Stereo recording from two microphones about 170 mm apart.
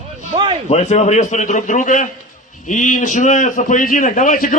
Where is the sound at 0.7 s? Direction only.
40° left (ahead or behind).